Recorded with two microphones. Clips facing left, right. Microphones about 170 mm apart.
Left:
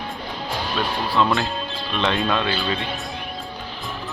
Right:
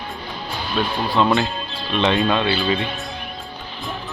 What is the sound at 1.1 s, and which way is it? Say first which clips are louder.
Speech: right 3 dB; centre (ahead or behind).